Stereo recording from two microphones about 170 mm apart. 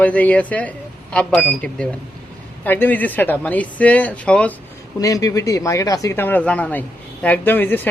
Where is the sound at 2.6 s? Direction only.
10° left (ahead or behind).